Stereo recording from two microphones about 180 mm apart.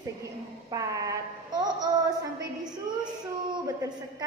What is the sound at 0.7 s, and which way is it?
Speech, 20° right (ahead or behind).